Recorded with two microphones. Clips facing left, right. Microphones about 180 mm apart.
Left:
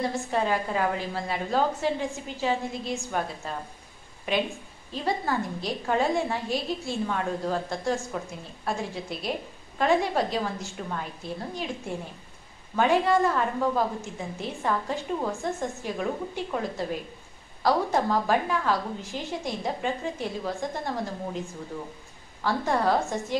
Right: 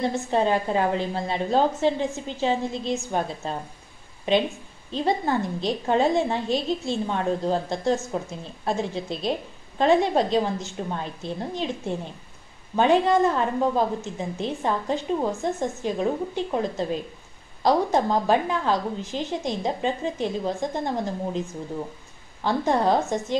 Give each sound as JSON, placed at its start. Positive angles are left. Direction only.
{"t": 0.3, "sound": "a woman's voice", "side_deg": -25}